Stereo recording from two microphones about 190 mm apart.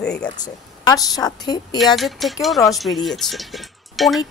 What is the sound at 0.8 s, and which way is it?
Speech, 20° left (ahead or behind).